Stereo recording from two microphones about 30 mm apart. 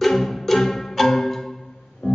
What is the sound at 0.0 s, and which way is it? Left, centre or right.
Music, centre.